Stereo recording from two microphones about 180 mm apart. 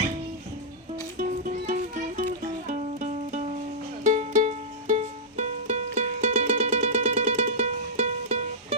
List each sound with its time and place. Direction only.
1.2 s music: 45° right (ahead or behind)